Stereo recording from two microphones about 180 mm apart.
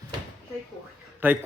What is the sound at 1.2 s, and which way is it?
Speech, 10° right (ahead or behind).